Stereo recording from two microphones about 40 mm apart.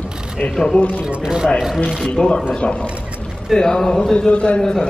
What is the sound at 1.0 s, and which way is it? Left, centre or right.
Speech, centre.